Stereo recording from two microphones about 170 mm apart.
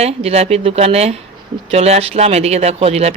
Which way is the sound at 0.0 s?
35° right (ahead or behind).